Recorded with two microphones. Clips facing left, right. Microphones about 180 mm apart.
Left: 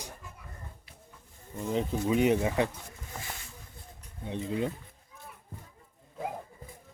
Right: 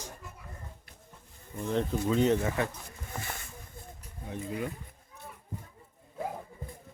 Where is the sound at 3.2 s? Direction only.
55° right (ahead or behind).